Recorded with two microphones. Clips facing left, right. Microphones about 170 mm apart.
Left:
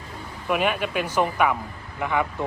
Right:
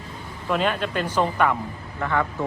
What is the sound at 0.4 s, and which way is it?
Speech, 10° left (ahead or behind).